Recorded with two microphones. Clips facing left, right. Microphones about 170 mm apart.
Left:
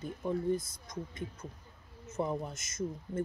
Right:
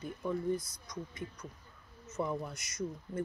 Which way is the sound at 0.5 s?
50° left (ahead or behind).